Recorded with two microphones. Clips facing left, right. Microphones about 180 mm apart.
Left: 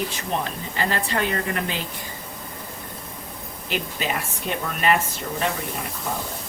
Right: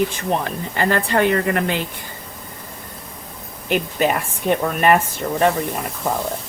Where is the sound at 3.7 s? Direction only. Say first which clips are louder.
Right 8 dB; 50° right (ahead or behind).